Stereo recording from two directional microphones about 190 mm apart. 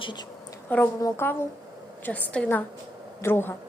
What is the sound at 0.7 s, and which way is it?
A woman's voice, 10° left (ahead or behind).